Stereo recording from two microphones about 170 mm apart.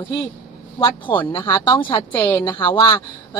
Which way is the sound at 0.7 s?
30° left (ahead or behind).